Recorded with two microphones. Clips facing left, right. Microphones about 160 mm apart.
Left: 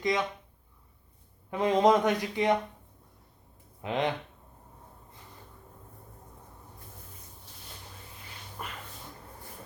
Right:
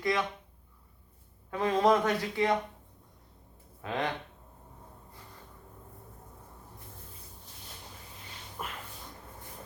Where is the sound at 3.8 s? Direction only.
20° left (ahead or behind).